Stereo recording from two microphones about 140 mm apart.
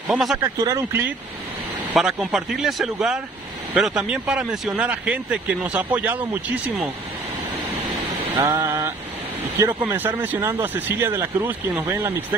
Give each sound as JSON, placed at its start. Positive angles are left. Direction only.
{"t": 0.1, "sound": "speech", "side_deg": 0}
{"t": 0.4, "sound": "speech", "side_deg": -25}
{"t": 2.0, "sound": "speech", "side_deg": 0}
{"t": 8.4, "sound": "speech", "side_deg": -20}